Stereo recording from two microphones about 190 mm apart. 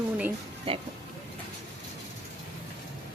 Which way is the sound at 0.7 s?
30° right (ahead or behind).